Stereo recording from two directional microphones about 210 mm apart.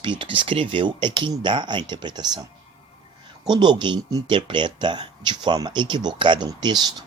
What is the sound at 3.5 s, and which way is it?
Speech, 20° right (ahead or behind).